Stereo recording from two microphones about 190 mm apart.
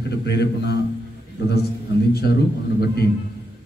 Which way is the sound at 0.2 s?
60° left (ahead or behind).